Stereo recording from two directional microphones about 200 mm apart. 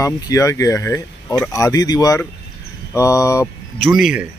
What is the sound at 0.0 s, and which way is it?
Speech, 15° left (ahead or behind).